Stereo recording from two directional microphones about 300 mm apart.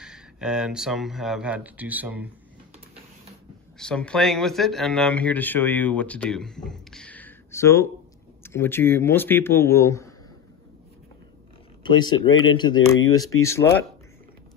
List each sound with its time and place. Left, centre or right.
0.0 s speech: centre
3.7 s speech: centre
11.8 s speech: centre
12.8 s speech: left
13.4 s speech: centre